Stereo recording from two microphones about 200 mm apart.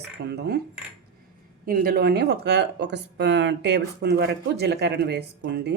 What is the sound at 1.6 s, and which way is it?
Speech, 45° right (ahead or behind).